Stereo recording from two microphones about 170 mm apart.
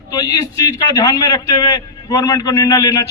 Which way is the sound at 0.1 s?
20° left (ahead or behind).